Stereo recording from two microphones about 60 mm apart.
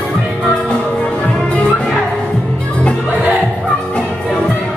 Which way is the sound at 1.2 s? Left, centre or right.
Centre.